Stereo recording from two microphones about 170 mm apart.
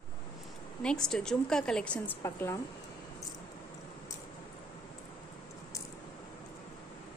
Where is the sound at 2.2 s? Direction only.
15° left (ahead or behind).